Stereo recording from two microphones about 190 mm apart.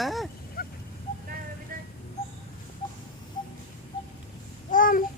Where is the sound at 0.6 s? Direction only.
50° left (ahead or behind).